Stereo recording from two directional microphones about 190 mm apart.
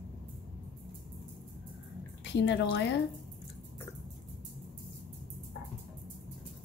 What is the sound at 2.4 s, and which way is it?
Speech, 65° left (ahead or behind).